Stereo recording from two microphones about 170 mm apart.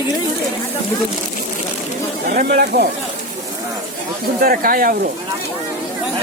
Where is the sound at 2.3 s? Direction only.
65° right (ahead or behind).